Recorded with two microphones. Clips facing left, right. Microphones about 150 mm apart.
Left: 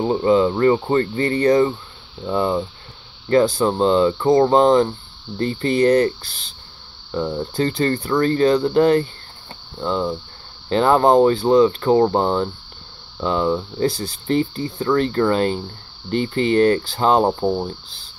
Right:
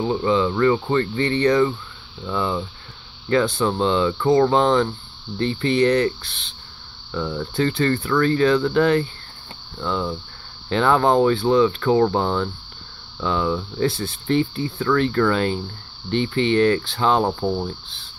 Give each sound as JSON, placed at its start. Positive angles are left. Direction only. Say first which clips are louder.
{"t": 0.0, "sound": "speech", "louder": "left 4 dB", "side_deg": 35}
{"t": 7.1, "sound": "speech", "louder": "left 3 dB", "side_deg": 30}
{"t": 10.7, "sound": "speech", "louder": "left 3 dB", "side_deg": 35}
{"t": 17.3, "sound": "speech", "louder": "left 3 dB", "side_deg": 25}